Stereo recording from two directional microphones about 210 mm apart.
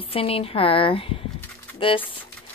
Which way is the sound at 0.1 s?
25° left (ahead or behind).